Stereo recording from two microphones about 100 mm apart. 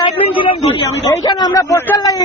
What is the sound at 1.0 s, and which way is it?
Speech, 40° left (ahead or behind).